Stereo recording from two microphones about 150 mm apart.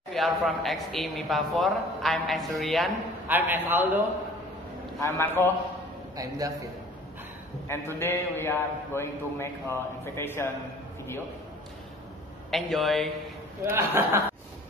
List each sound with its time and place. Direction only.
0.1 s a man's voice: centre (ahead or behind)
3.3 s a man's voice: 15° right (ahead or behind)
5.0 s a man's voice: 15° left (ahead or behind)
6.1 s a man's voice: 25° right (ahead or behind)
7.6 s a man's voice: 15° left (ahead or behind)
12.4 s a man's voice: centre (ahead or behind)
13.7 s a man's voice: 15° right (ahead or behind)